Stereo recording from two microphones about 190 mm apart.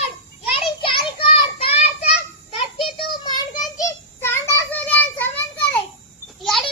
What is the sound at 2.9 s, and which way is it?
Child singing, 20° left (ahead or behind).